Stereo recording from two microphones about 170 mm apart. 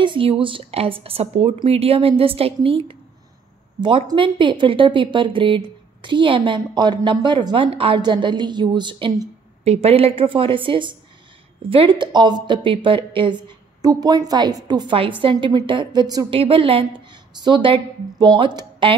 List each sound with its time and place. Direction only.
0.0 s a woman's voice: 30° right (ahead or behind)